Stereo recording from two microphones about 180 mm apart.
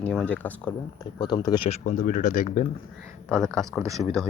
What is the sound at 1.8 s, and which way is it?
Speech, 45° left (ahead or behind).